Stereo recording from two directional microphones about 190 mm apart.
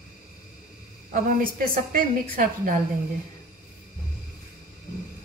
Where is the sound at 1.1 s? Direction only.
45° right (ahead or behind).